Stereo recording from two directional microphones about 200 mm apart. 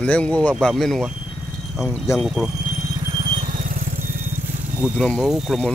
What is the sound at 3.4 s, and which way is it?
Vehicle, 40° right (ahead or behind).